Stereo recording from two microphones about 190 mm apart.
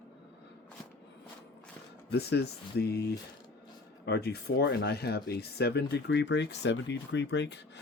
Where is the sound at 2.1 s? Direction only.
60° left (ahead or behind).